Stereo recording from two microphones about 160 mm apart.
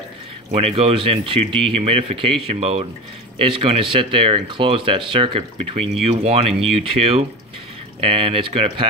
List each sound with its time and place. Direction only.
0.6 s speech: 40° right (ahead or behind)